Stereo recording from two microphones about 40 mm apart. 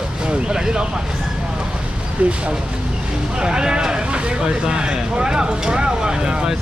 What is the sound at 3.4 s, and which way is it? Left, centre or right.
Speech, right.